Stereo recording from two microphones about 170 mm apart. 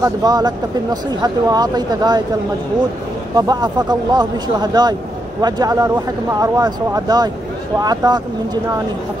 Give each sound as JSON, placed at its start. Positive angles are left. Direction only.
{"t": 0.0, "sound": "speech", "side_deg": -20}
{"t": 3.3, "sound": "speech", "side_deg": -25}